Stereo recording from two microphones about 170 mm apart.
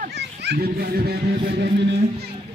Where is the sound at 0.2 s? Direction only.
75° right (ahead or behind).